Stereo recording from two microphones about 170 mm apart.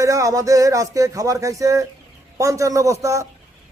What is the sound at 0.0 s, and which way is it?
A man's voice, 20° right (ahead or behind).